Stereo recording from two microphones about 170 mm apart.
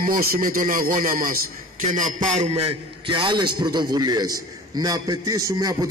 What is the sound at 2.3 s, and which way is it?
A man's voice, 40° right (ahead or behind).